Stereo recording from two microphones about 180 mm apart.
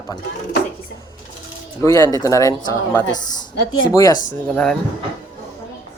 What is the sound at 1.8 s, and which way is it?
Speech, 15° left (ahead or behind).